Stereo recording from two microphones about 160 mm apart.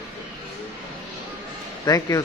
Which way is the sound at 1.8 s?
20° left (ahead or behind).